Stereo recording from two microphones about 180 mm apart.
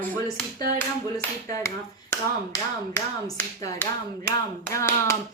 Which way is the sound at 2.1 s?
15° left (ahead or behind).